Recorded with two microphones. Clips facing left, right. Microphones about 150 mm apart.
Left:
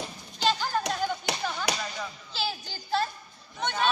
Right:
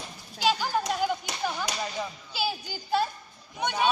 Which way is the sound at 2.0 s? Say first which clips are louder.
Right 3 dB; 10° right (ahead or behind).